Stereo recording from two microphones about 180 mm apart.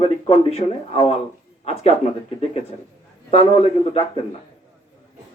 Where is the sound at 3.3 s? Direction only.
35° left (ahead or behind).